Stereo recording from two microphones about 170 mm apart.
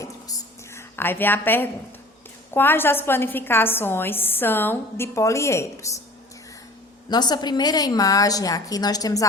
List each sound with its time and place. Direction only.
0.0 s a sound: 20° left (ahead or behind)
2.5 s a woman's voice: 10° left (ahead or behind)
7.1 s a woman's voice: 25° left (ahead or behind)